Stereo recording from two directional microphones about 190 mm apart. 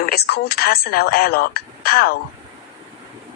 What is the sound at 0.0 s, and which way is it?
Speech, 55° left (ahead or behind).